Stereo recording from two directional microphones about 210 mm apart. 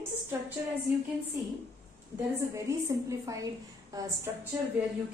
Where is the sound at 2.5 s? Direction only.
15° right (ahead or behind).